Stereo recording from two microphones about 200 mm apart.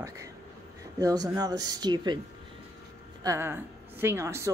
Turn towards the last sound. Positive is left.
turn(degrees=-15)  # may be behind; listen again after turning